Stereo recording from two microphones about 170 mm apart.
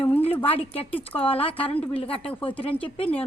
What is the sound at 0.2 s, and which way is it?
A woman's voice, 35° left (ahead or behind).